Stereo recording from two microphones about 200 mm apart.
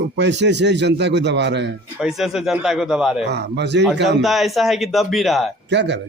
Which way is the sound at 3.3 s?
60° right (ahead or behind).